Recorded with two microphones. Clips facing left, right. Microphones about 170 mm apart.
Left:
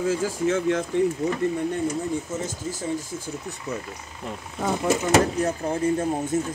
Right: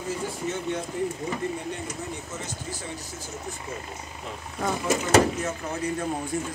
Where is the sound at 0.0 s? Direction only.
90° left.